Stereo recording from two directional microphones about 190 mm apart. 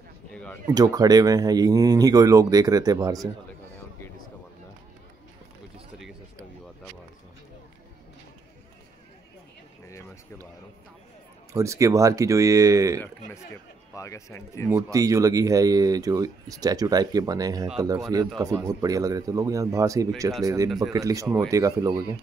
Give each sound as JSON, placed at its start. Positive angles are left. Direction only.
{"t": 0.3, "sound": "a sound", "side_deg": 5}
{"t": 0.7, "sound": "speech", "side_deg": -20}
{"t": 9.8, "sound": "a sound", "side_deg": 15}
{"t": 11.5, "sound": "speech", "side_deg": -15}
{"t": 13.9, "sound": "speech", "side_deg": 15}
{"t": 14.7, "sound": "speech", "side_deg": -15}